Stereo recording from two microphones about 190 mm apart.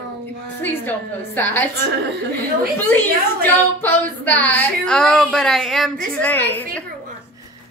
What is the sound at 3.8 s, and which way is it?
A woman's voice, 10° left (ahead or behind).